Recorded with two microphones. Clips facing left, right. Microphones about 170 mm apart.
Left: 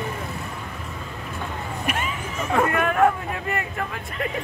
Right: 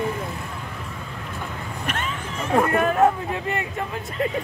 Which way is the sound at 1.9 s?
10° left (ahead or behind).